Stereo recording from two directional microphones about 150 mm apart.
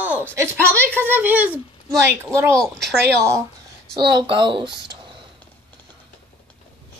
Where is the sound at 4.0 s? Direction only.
30° right (ahead or behind).